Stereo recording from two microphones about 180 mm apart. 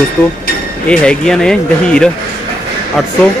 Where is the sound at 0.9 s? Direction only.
5° left (ahead or behind).